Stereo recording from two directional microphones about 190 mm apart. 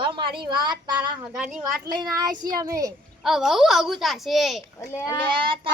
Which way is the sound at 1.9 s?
20° right (ahead or behind).